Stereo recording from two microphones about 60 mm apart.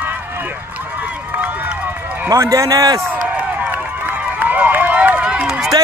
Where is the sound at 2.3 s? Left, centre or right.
Right.